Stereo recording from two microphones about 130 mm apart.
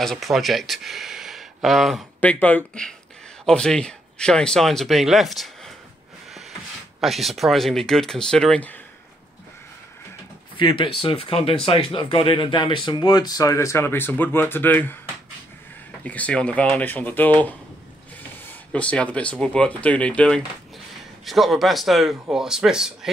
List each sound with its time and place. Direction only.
0.0 s speech: centre (ahead or behind)
2.1 s speech: 10° left (ahead or behind)
7.0 s speech: centre (ahead or behind)
10.6 s speech: 40° left (ahead or behind); by 15.0 s 15° left (ahead or behind)
16.0 s speech: 10° left (ahead or behind)
18.7 s speech: 10° left (ahead or behind)